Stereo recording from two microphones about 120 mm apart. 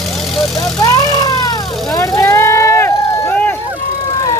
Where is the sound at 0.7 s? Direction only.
30° left (ahead or behind).